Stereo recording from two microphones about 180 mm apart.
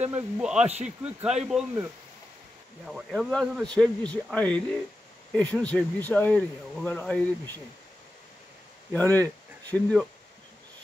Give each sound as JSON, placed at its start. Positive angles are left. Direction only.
{"t": 0.0, "sound": "speech", "side_deg": -10}
{"t": 0.7, "sound": "speech", "side_deg": -35}
{"t": 1.0, "sound": "speech", "side_deg": -5}
{"t": 2.9, "sound": "speech", "side_deg": 5}
{"t": 8.9, "sound": "speech", "side_deg": 10}